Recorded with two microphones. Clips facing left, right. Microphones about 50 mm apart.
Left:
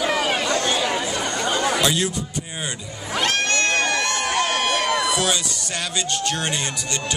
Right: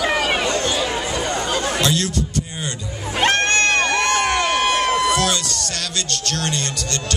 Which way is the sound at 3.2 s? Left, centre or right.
Right.